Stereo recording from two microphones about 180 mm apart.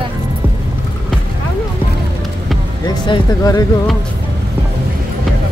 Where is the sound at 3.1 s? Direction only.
20° left (ahead or behind).